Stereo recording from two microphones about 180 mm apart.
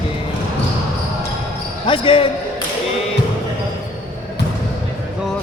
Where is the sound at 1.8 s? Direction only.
30° left (ahead or behind).